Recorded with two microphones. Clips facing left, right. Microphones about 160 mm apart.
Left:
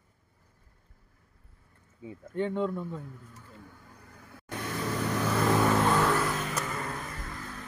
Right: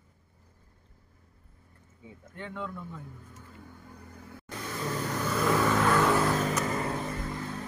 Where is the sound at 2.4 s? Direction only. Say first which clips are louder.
Left 9 dB; 25° left (ahead or behind).